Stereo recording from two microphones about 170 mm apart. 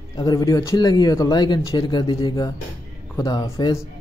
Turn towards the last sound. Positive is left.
turn(degrees=20)  # may be behind; listen again after turning